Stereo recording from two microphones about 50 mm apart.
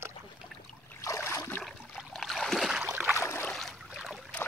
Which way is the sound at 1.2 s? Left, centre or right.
Left.